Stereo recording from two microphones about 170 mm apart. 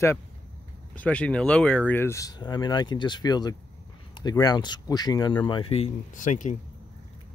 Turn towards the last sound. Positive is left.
turn(degrees=50)  # may be behind; listen again after turning